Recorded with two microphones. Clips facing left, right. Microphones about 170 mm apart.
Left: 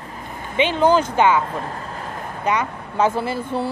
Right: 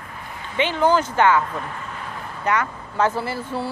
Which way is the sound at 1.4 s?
35° left (ahead or behind).